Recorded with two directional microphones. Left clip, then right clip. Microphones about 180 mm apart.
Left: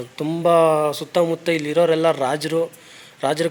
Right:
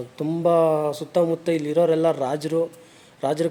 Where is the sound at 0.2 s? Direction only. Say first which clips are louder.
Left 3 dB; 5° right (ahead or behind).